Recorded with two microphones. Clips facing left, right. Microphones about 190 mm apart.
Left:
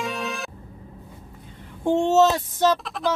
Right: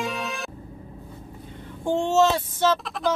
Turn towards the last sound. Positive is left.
turn(degrees=0)  # may be behind; listen again after turning